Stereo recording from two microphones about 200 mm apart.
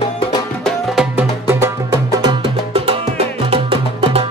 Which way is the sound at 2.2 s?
25° right (ahead or behind).